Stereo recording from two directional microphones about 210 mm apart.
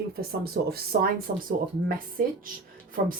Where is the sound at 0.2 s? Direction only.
45° right (ahead or behind).